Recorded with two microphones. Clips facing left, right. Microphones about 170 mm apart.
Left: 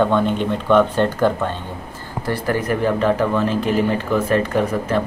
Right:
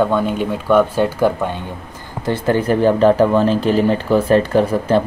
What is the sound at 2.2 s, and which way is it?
Speech, 25° right (ahead or behind).